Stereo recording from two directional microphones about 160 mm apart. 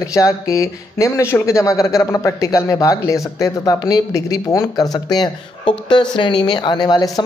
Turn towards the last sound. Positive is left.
turn(degrees=25)  # may be behind; listen again after turning